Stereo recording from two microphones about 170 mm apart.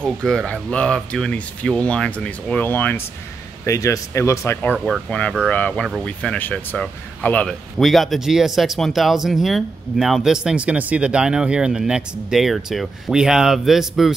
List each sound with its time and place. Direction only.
0.0 s speech: 5° left (ahead or behind)
4.7 s speech: 5° right (ahead or behind)
5.5 s speech: 10° left (ahead or behind)